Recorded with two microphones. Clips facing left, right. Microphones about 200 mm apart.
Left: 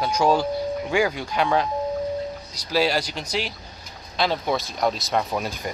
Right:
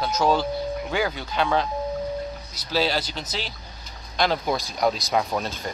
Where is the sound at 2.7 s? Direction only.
5° left (ahead or behind).